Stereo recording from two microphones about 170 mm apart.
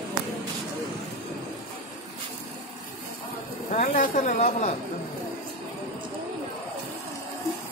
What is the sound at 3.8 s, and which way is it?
Speech, 55° left (ahead or behind).